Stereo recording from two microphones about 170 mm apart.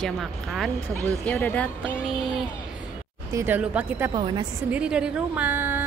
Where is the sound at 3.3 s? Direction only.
15° right (ahead or behind).